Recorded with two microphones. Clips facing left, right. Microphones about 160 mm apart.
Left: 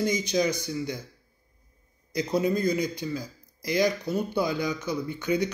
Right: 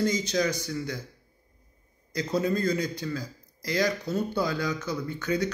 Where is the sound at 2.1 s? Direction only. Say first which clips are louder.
Left 1 dB; 15° left (ahead or behind).